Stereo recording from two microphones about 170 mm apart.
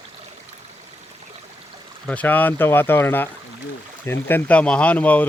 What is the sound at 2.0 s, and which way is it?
Speech, 10° left (ahead or behind).